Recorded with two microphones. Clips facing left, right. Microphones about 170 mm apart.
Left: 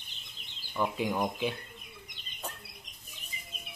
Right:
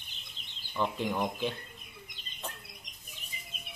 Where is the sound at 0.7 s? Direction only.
10° left (ahead or behind).